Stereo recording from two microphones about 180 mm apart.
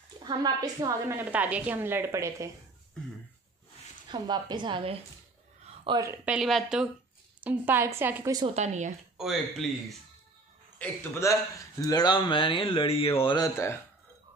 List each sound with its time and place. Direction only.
0.2 s a woman's voice: 20° right (ahead or behind)
4.1 s a woman's voice: 25° right (ahead or behind)
6.2 s a woman's voice: 5° right (ahead or behind)
8.5 s speech: 40° right (ahead or behind)
9.2 s speech: centre (ahead or behind)
10.8 s speech: 15° left (ahead or behind)